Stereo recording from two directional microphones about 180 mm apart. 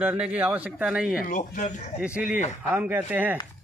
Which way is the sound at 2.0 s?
5° right (ahead or behind).